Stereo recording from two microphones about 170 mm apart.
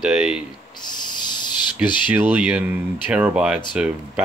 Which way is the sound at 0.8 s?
25° left (ahead or behind).